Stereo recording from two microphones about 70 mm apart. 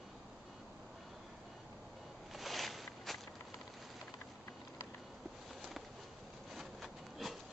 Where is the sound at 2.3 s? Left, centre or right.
Centre.